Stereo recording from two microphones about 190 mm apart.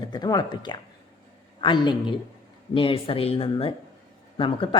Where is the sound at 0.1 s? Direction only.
20° left (ahead or behind).